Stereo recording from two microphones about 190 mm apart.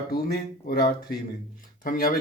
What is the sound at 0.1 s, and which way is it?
A man's voice, 55° left (ahead or behind).